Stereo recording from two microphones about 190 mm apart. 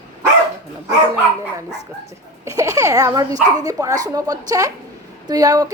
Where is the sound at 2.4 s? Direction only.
15° right (ahead or behind).